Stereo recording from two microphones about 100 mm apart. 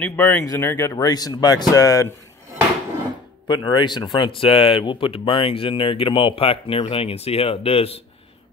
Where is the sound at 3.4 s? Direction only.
50° left (ahead or behind); by 7.9 s 75° left (ahead or behind).